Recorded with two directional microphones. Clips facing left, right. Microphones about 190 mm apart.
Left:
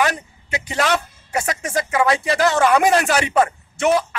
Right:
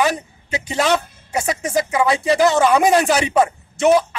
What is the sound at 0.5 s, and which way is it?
A man's voice, 15° right (ahead or behind).